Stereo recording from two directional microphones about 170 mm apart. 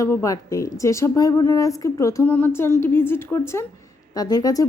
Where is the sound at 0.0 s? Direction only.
15° left (ahead or behind).